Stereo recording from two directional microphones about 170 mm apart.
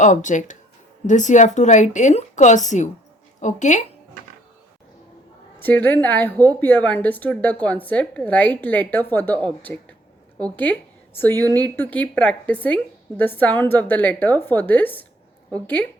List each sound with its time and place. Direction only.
0.0 s speech: 45° left (ahead or behind)
5.5 s a woman's voice: 10° left (ahead or behind)